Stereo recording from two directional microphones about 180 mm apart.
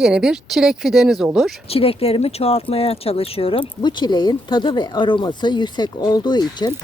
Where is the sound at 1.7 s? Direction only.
30° left (ahead or behind).